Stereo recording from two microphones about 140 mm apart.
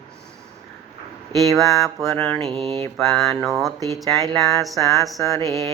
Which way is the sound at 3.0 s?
Centre (ahead or behind).